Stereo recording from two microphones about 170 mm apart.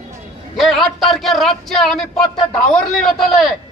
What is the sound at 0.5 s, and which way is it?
Speech, centre (ahead or behind).